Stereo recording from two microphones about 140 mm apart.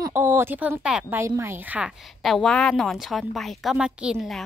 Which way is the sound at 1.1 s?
20° right (ahead or behind).